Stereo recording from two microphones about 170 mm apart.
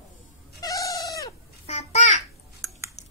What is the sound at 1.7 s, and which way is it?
Babbling, 40° left (ahead or behind).